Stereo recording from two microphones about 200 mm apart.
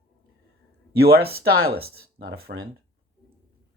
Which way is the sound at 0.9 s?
50° right (ahead or behind).